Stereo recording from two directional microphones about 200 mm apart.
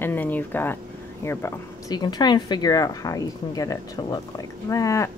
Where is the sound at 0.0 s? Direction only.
10° left (ahead or behind).